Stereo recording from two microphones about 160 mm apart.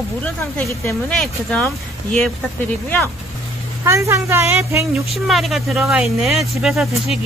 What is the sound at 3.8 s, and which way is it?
A woman's voice, 20° right (ahead or behind).